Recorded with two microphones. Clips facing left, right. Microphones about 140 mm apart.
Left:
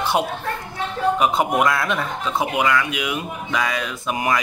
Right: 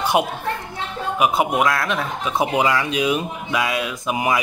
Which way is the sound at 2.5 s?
30° right (ahead or behind).